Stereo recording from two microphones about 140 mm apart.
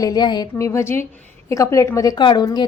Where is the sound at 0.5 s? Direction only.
20° left (ahead or behind).